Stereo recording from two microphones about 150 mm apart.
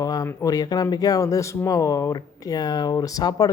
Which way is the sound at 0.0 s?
25° left (ahead or behind).